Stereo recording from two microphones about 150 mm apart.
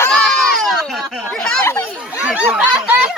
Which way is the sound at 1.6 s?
20° left (ahead or behind).